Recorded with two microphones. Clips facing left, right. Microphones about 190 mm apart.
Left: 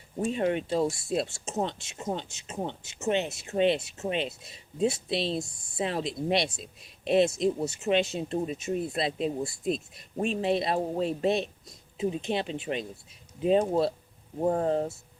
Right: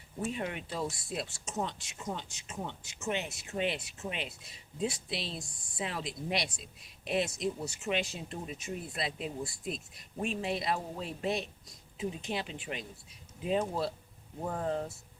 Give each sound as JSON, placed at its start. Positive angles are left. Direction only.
{"t": 0.2, "sound": "speech", "side_deg": 30}